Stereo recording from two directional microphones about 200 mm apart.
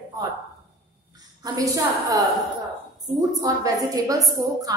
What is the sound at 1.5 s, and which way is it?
Speech, 15° right (ahead or behind).